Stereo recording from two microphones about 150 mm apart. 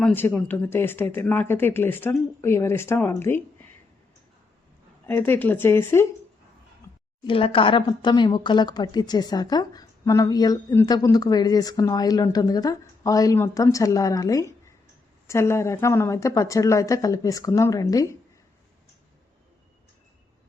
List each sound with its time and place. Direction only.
0.0 s speech: 15° left (ahead or behind)
5.0 s speech: 15° left (ahead or behind)
7.3 s speech: 35° left (ahead or behind)